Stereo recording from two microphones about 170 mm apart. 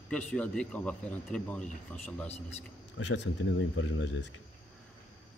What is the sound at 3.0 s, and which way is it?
Speech, 90° left.